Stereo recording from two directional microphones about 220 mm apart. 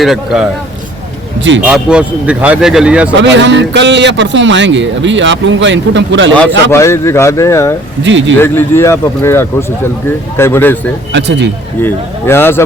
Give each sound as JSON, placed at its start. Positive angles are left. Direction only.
{"t": 0.0, "sound": "speech", "side_deg": 0}
{"t": 1.6, "sound": "speech", "side_deg": -5}
{"t": 3.2, "sound": "a man's voice", "side_deg": -55}
{"t": 6.7, "sound": "speech", "side_deg": 10}
{"t": 8.0, "sound": "a man's voice", "side_deg": -55}
{"t": 8.4, "sound": "speech", "side_deg": 10}
{"t": 11.1, "sound": "speech", "side_deg": -50}
{"t": 11.8, "sound": "speech", "side_deg": 10}